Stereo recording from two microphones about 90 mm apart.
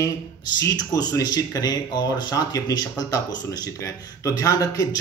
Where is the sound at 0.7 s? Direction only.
50° left (ahead or behind).